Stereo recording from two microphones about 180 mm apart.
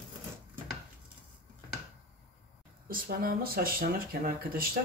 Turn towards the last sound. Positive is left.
turn(degrees=-55)  # may be behind; listen again after turning